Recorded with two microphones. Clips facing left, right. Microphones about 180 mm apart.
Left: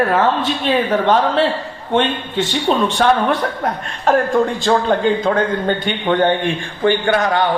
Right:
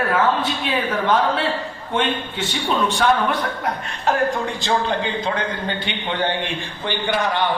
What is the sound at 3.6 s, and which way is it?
A man's voice, 50° left (ahead or behind).